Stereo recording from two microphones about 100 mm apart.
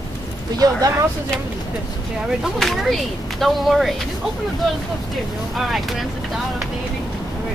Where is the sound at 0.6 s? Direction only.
35° right (ahead or behind).